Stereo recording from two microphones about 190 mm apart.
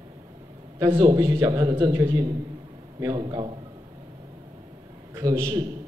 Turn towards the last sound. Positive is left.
turn(degrees=-20)  # may be behind; listen again after turning